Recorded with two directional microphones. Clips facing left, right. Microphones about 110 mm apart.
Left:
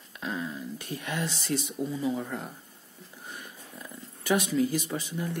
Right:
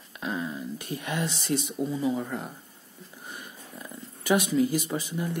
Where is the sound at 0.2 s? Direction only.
20° right (ahead or behind).